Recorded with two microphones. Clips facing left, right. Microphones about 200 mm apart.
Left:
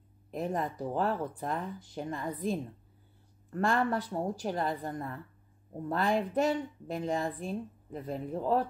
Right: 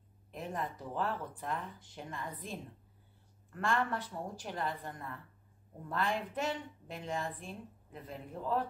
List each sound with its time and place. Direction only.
0.3 s a woman's voice: 40° left (ahead or behind)